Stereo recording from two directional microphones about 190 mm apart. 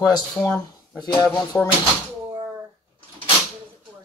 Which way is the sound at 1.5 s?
10° left (ahead or behind).